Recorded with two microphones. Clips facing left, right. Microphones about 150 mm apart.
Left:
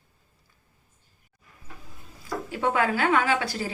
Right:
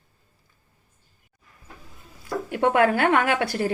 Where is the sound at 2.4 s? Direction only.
60° right (ahead or behind).